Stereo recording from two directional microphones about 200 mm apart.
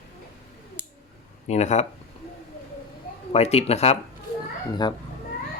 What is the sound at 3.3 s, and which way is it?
Speech, 30° left (ahead or behind).